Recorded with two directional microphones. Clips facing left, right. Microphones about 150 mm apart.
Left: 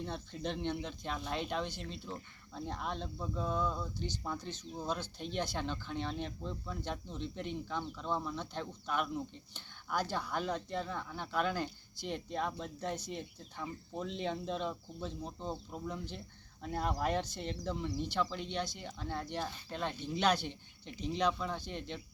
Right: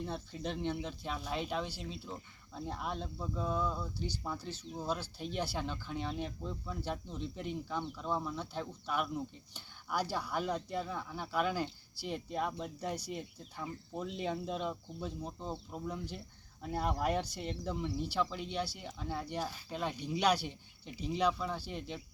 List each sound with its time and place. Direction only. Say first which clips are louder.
0.0 s speech: even; 5° right (ahead or behind)